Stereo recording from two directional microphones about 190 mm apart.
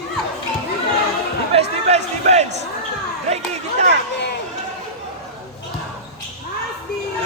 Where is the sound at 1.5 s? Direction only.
35° right (ahead or behind).